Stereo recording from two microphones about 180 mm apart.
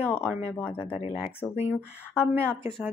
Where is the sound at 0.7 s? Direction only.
30° left (ahead or behind).